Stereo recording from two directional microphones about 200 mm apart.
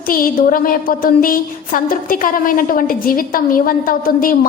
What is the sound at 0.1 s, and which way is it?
A woman's voice, 45° left (ahead or behind).